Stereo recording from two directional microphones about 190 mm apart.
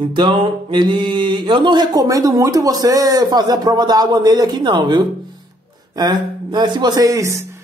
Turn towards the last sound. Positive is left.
turn(degrees=-15)  # may be behind; listen again after turning